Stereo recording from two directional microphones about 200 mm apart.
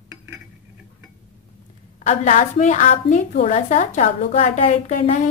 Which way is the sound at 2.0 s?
35° left (ahead or behind).